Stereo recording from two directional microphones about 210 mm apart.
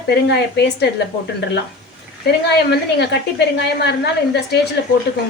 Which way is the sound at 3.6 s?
55° left (ahead or behind).